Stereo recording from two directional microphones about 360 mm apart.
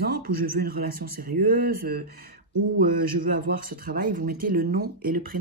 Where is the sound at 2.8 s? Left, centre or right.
Right.